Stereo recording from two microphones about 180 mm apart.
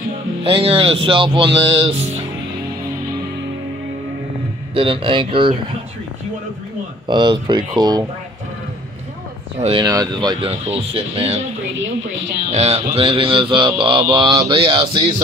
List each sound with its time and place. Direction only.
0.4 s mantra: 30° right (ahead or behind)
4.7 s mantra: 30° right (ahead or behind)
7.1 s mantra: 25° right (ahead or behind)
9.6 s speech: 30° right (ahead or behind)
9.8 s mantra: 20° right (ahead or behind)
12.5 s mantra: 35° right (ahead or behind)